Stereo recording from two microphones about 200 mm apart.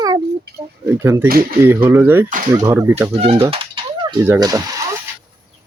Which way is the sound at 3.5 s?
25° right (ahead or behind).